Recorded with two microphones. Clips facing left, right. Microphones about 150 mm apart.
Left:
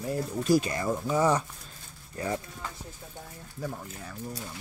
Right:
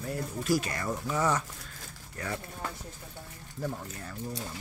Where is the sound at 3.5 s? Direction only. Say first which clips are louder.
Right 1 dB; 5° left (ahead or behind).